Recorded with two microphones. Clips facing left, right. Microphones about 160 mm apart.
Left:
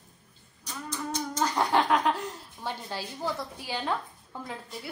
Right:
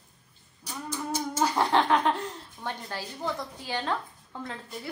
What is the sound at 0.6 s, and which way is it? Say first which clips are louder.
A woman's voice: right 1 dB; 10° right (ahead or behind).